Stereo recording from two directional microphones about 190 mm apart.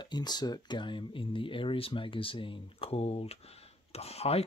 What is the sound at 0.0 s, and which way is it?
Speech, 20° left (ahead or behind).